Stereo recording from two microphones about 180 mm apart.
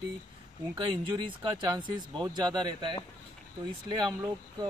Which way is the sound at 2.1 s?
25° right (ahead or behind).